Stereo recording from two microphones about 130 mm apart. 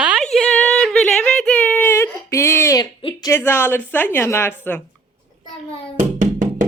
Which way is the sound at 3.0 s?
40° left (ahead or behind).